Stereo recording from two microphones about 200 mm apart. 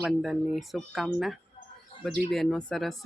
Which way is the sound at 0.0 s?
Centre (ahead or behind).